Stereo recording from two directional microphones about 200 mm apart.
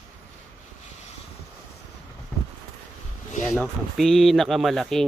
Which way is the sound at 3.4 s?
Centre (ahead or behind).